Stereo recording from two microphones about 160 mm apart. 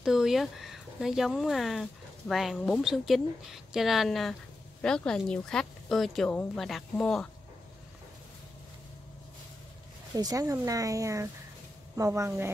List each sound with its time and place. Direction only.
0.0 s speech: 5° right (ahead or behind)
10.1 s a woman's voice: 20° right (ahead or behind)